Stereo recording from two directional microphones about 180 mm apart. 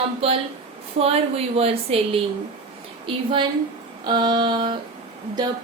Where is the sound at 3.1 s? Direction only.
30° right (ahead or behind).